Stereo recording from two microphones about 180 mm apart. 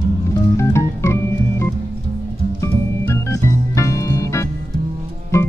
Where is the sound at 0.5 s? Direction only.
15° left (ahead or behind).